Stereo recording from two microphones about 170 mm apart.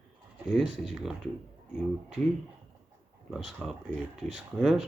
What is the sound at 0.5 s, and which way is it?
Speech, centre (ahead or behind).